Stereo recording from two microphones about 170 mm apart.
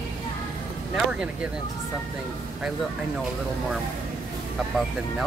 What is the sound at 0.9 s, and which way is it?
Speech, 5° right (ahead or behind).